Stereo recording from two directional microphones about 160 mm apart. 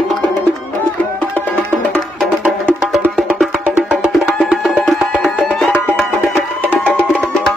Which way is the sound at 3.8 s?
5° right (ahead or behind).